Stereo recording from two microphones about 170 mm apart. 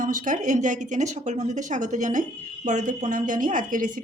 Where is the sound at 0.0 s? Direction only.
50° right (ahead or behind).